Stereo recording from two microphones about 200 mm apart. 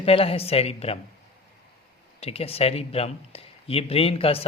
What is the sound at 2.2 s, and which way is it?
Speech, 30° left (ahead or behind).